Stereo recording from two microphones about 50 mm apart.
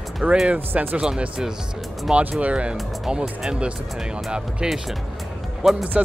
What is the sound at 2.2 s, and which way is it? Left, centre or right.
Speech, right.